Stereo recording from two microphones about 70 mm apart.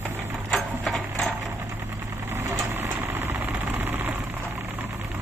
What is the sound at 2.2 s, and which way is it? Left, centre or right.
Vehicle, right.